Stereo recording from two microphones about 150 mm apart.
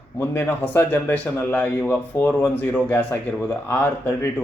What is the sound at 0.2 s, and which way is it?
Speech, 15° left (ahead or behind).